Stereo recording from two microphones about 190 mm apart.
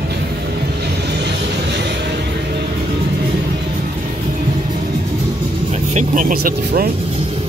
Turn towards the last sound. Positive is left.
turn(degrees=-50)  # may be behind; listen again after turning